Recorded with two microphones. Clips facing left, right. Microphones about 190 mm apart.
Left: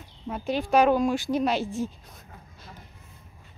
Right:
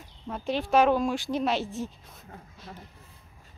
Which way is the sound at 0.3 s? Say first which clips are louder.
Left 1 dB; centre (ahead or behind).